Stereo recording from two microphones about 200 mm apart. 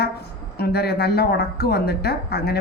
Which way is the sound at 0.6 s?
55° left (ahead or behind).